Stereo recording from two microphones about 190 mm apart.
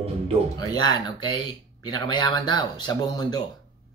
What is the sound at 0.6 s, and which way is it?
Speech, 20° left (ahead or behind).